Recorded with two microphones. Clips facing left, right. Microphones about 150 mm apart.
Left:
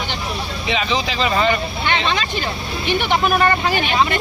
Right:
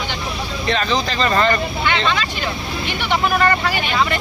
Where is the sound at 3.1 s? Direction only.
20° left (ahead or behind).